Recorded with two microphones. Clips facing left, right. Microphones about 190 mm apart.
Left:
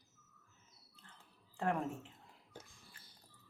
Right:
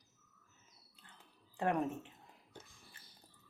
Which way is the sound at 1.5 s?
20° right (ahead or behind).